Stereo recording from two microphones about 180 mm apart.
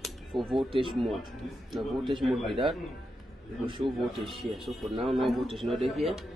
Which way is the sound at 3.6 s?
25° right (ahead or behind).